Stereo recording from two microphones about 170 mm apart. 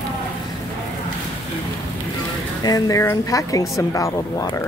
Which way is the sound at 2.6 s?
20° left (ahead or behind).